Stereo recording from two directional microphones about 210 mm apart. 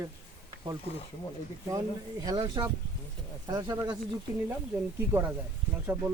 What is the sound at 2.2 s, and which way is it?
Speech, 15° right (ahead or behind).